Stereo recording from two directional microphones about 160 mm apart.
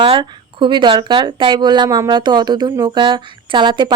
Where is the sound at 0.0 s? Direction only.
30° right (ahead or behind).